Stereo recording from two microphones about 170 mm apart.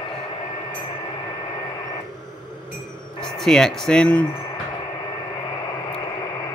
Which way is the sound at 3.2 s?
5° left (ahead or behind).